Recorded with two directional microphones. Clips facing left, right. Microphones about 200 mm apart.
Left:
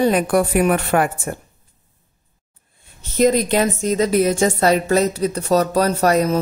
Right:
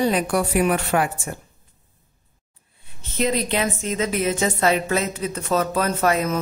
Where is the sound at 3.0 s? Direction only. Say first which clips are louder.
Left 7 dB; 45° left (ahead or behind).